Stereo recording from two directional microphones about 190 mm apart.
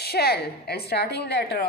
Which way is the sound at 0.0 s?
55° left (ahead or behind).